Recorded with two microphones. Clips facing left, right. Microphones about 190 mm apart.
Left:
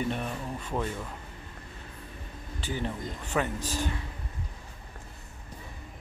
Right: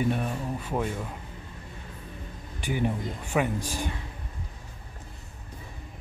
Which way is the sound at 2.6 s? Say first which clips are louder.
Right 5 dB; 15° right (ahead or behind).